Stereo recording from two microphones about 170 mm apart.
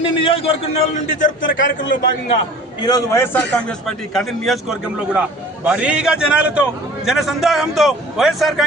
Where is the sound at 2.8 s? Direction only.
20° left (ahead or behind).